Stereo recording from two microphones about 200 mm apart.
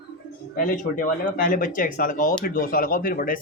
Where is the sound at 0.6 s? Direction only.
40° left (ahead or behind).